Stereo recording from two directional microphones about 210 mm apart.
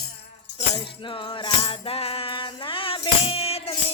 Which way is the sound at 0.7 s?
20° left (ahead or behind).